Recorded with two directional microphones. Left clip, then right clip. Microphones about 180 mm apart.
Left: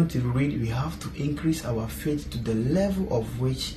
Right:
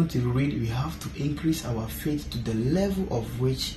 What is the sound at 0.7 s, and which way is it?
Speech, 35° left (ahead or behind).